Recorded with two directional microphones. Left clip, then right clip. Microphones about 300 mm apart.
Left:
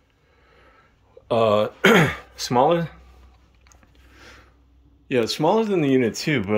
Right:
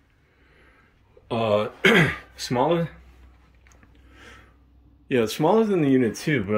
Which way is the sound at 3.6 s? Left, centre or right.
Centre.